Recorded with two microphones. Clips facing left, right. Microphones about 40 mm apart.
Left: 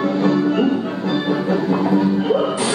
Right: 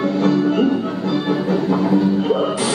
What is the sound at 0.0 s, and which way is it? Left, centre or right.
Music, left.